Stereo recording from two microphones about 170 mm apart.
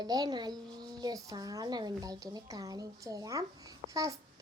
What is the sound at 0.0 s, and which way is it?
A child's voice, 25° right (ahead or behind).